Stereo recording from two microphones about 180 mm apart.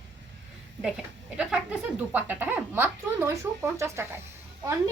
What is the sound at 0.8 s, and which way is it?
Speech, 5° right (ahead or behind).